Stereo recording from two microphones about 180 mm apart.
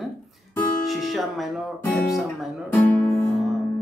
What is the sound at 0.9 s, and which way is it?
Music, centre (ahead or behind).